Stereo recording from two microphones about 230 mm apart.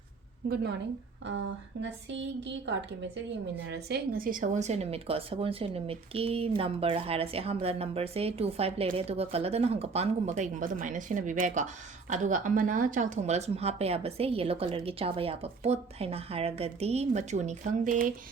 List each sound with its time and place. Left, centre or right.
0.4 s a woman's voice: right
1.8 s a woman's voice: right